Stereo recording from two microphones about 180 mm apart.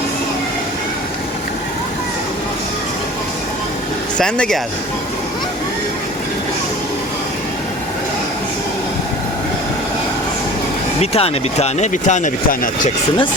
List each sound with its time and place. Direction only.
4.2 s speech: 5° left (ahead or behind)
11.0 s speech: 35° left (ahead or behind)